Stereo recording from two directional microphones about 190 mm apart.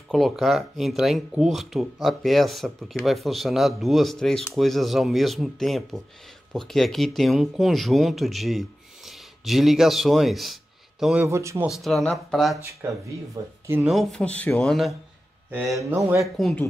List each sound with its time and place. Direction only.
0.1 s speech: centre (ahead or behind)
11.2 s speech: 15° right (ahead or behind)
11.7 s speech: centre (ahead or behind)
12.8 s speech: 15° right (ahead or behind)
13.8 s speech: centre (ahead or behind)
15.8 s speech: 15° right (ahead or behind)
16.2 s speech: centre (ahead or behind)